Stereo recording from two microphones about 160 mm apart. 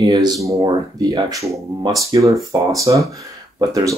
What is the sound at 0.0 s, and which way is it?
Speech, 25° right (ahead or behind).